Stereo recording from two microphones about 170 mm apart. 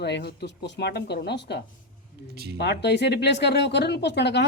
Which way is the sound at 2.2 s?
85° left.